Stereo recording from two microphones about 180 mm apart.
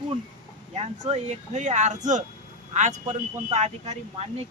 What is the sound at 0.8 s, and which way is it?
Speech, 35° right (ahead or behind).